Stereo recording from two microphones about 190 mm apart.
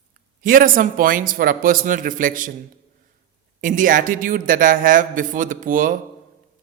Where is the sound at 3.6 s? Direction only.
45° right (ahead or behind).